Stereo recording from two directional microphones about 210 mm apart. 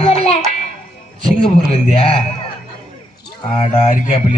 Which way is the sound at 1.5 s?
25° left (ahead or behind).